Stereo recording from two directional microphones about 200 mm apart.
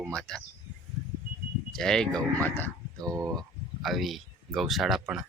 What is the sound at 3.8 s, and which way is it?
Speech, centre (ahead or behind).